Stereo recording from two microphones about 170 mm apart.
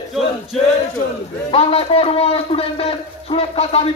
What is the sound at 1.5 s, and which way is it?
A man's voice, 35° left (ahead or behind).